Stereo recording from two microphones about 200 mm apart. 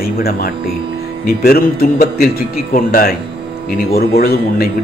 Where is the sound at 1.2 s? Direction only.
50° left (ahead or behind).